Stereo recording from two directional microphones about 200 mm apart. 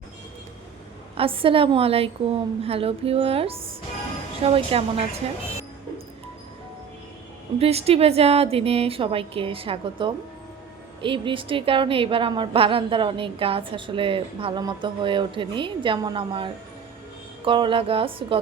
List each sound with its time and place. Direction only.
1.1 s a woman's voice: 25° right (ahead or behind)
7.6 s a woman's voice: 30° right (ahead or behind)